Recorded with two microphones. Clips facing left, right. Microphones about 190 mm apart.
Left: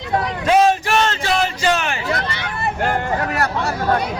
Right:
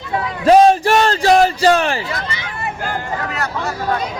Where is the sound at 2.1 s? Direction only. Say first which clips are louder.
Left 2 dB; 65° left (ahead or behind).